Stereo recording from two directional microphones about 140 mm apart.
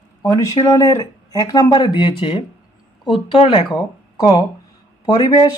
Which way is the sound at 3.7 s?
30° left (ahead or behind).